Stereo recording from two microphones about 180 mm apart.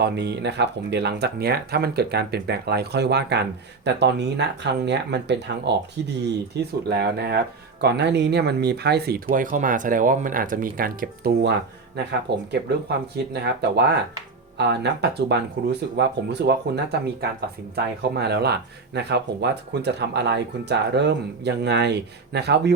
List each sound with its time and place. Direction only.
0.0 s speech: 65° right (ahead or behind)
12.5 s speech: 65° right (ahead or behind)